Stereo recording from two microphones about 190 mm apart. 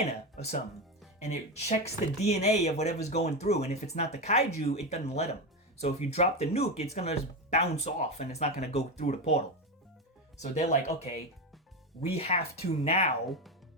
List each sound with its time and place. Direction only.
0.1 s speech: 35° left (ahead or behind)
10.4 s speech: 35° left (ahead or behind)
13.2 s speech: centre (ahead or behind)